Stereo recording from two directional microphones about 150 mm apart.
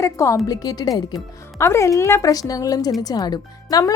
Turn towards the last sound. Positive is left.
turn(degrees=25)  # may be behind; listen again after turning